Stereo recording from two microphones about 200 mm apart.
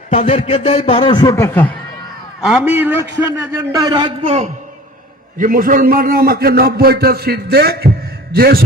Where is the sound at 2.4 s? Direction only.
Centre (ahead or behind); by 4.5 s 30° right (ahead or behind).